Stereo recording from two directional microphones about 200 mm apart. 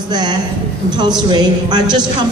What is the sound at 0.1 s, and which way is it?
A woman's voice, 20° right (ahead or behind).